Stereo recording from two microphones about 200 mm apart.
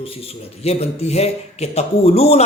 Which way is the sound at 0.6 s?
30° left (ahead or behind).